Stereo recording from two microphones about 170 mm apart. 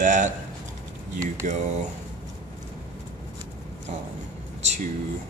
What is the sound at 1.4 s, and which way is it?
Speech, 50° right (ahead or behind).